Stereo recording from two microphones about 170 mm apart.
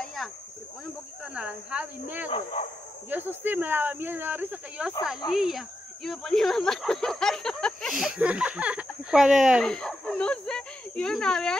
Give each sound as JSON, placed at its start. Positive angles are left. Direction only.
{"t": 0.0, "sound": "cricket", "side_deg": 0}
{"t": 1.2, "sound": "speech", "side_deg": -5}
{"t": 2.2, "sound": "speech", "side_deg": 40}
{"t": 3.1, "sound": "speech", "side_deg": -10}